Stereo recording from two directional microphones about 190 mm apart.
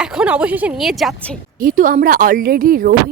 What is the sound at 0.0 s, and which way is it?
A woman's voice, 5° right (ahead or behind).